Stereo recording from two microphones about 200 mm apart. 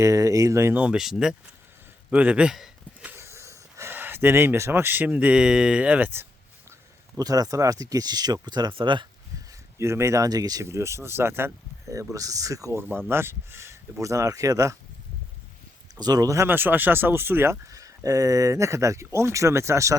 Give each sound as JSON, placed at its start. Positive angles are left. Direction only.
{"t": 0.0, "sound": "speech", "side_deg": -15}
{"t": 7.2, "sound": "speech", "side_deg": -20}
{"t": 16.0, "sound": "speech", "side_deg": -20}